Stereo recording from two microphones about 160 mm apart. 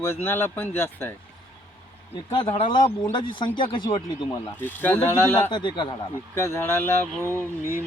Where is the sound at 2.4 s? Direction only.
30° left (ahead or behind).